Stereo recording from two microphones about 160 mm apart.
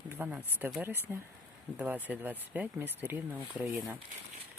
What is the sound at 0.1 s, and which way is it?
Speech, 10° right (ahead or behind).